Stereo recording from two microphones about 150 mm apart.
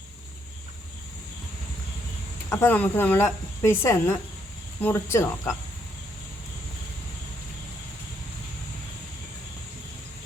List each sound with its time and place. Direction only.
2.5 s speech: 15° left (ahead or behind)